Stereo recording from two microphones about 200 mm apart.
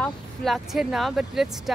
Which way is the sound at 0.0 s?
Centre (ahead or behind).